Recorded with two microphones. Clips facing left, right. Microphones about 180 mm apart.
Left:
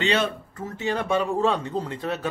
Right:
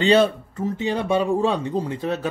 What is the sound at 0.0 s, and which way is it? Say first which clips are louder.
Speech: right 7 dB; 35° right (ahead or behind).